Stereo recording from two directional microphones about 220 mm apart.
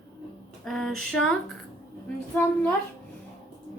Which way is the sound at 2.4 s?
10° left (ahead or behind).